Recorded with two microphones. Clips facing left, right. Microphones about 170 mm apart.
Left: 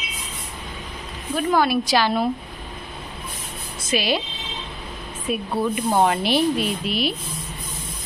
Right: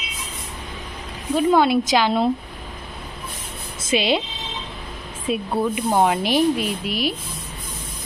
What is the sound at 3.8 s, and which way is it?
Speech, 25° right (ahead or behind).